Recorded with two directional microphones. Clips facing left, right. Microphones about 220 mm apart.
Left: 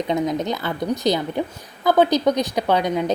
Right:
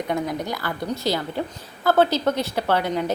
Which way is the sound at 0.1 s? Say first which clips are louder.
Left 4 dB; 20° left (ahead or behind).